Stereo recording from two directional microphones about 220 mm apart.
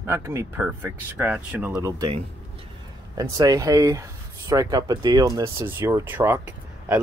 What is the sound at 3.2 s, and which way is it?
Speech, 15° right (ahead or behind).